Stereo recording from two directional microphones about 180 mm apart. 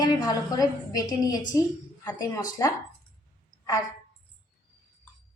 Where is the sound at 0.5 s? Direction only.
20° left (ahead or behind).